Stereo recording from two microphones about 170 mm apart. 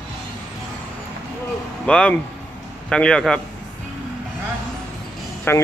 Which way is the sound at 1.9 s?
5° left (ahead or behind).